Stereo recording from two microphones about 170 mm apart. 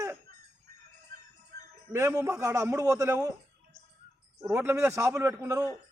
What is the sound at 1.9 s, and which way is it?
A man's voice, 15° right (ahead or behind).